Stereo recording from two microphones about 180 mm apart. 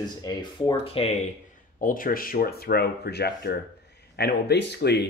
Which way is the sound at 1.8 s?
50° left (ahead or behind).